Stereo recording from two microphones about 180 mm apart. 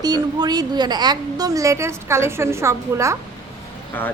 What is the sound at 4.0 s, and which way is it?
Speech, 10° left (ahead or behind).